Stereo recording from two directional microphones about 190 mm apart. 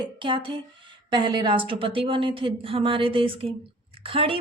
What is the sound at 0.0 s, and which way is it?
Speech, 25° right (ahead or behind).